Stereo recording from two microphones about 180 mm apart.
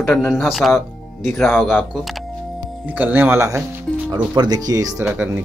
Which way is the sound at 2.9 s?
10° right (ahead or behind).